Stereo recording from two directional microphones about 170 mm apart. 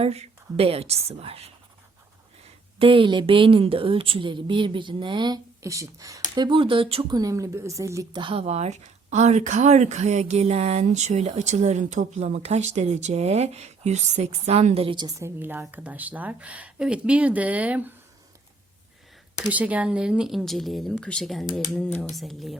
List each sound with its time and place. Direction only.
0.0 s speech: 35° right (ahead or behind)
2.7 s a woman's voice: 30° right (ahead or behind)
7.2 s a woman's voice: 20° right (ahead or behind)
8.2 s speech: 35° right (ahead or behind); by 17.9 s 10° right (ahead or behind)
19.5 s speech: 10° right (ahead or behind)